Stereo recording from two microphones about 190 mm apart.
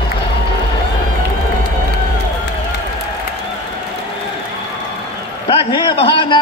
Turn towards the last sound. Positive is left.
turn(degrees=25)  # may be behind; listen again after turning